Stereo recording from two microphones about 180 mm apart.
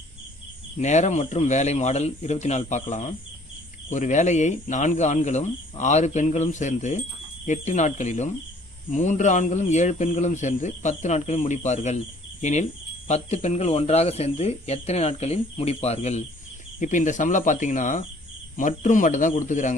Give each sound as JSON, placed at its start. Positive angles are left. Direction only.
{"t": 0.7, "sound": "a man's voice", "side_deg": 40}